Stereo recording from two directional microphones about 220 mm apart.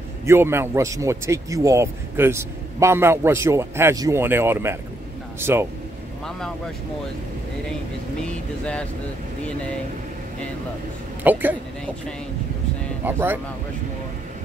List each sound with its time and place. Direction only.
0.2 s a man's voice: 10° right (ahead or behind)
11.3 s a man's voice: 10° right (ahead or behind)
13.0 s a man's voice: 10° right (ahead or behind)